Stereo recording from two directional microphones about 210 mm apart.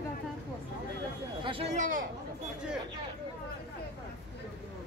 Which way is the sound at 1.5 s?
30° right (ahead or behind).